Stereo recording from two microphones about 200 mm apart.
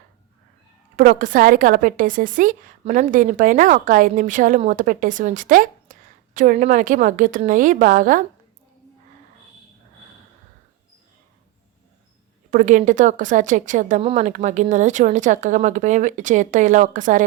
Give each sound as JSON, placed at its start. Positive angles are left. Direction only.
{"t": 0.9, "sound": "a woman's voice", "side_deg": -45}
{"t": 12.5, "sound": "a woman's voice", "side_deg": -40}